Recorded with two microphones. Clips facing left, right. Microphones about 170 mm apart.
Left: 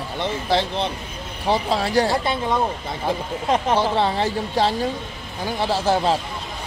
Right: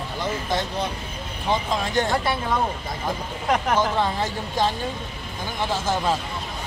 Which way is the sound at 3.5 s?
30° left (ahead or behind).